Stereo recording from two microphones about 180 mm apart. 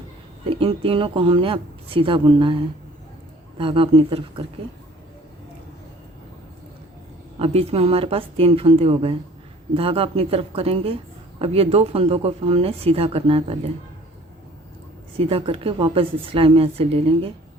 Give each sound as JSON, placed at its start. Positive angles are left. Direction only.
{"t": 0.4, "sound": "speech", "side_deg": -30}
{"t": 3.6, "sound": "speech", "side_deg": -30}
{"t": 7.3, "sound": "speech", "side_deg": -35}
{"t": 15.2, "sound": "speech", "side_deg": -30}